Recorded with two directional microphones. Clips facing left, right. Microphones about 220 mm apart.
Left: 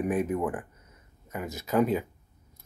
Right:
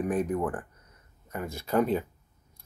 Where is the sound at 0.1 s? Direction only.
5° left (ahead or behind).